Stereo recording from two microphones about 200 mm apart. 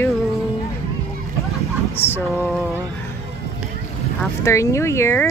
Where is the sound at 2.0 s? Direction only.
10° left (ahead or behind).